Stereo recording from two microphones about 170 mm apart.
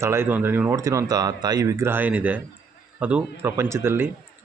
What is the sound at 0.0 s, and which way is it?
Speech, 15° right (ahead or behind).